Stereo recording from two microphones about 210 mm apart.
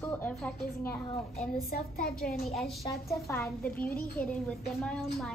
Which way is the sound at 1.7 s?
45° left (ahead or behind).